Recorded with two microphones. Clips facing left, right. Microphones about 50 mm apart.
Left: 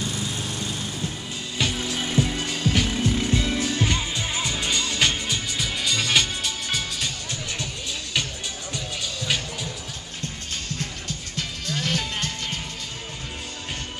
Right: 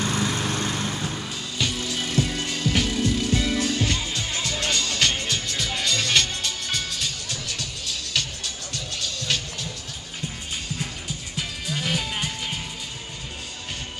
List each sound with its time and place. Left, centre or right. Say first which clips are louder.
0.0 s lawn mower: right 5 dB; right
1.6 s music: left 1 dB; centre
7.2 s music: left 1 dB; left
10.8 s music: even; centre